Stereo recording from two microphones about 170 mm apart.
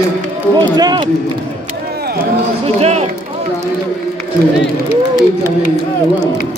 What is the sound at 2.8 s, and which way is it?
Run, 40° right (ahead or behind).